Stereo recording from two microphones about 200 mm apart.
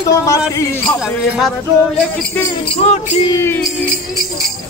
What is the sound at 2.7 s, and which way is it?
Music, 30° left (ahead or behind).